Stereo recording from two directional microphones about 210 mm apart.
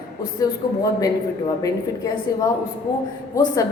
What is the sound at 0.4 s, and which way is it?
Speech, 15° left (ahead or behind).